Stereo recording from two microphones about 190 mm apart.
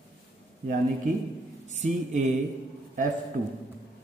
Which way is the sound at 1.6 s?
40° right (ahead or behind).